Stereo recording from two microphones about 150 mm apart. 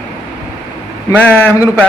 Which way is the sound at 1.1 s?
10° left (ahead or behind).